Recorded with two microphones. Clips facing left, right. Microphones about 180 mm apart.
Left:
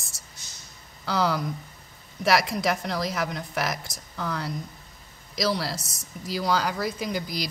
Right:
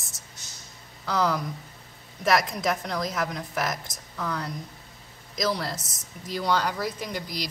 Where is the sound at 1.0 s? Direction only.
Centre (ahead or behind).